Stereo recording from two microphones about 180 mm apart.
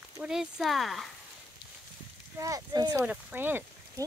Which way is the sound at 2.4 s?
20° right (ahead or behind).